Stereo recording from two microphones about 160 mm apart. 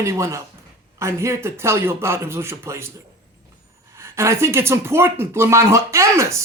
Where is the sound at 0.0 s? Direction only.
20° right (ahead or behind).